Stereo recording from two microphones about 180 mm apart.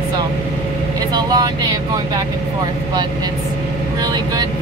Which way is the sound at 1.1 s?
20° right (ahead or behind).